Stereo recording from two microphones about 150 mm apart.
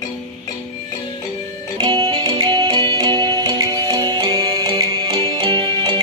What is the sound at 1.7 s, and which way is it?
Music, 35° right (ahead or behind).